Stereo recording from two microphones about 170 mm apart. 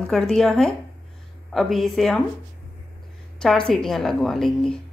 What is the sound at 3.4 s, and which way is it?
A woman's voice, 5° left (ahead or behind).